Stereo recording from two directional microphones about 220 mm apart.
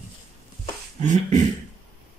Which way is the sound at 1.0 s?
35° right (ahead or behind).